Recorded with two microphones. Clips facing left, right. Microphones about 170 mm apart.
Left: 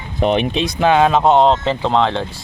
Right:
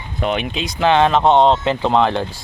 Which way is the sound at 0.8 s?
10° left (ahead or behind).